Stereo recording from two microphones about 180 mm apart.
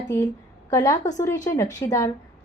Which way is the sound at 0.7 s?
20° left (ahead or behind).